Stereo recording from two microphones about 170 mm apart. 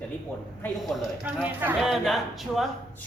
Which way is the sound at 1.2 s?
10° right (ahead or behind).